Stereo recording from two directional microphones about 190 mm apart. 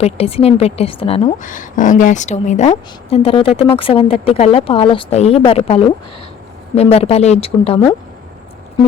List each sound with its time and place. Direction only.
0.0 s a woman's voice: 30° left (ahead or behind)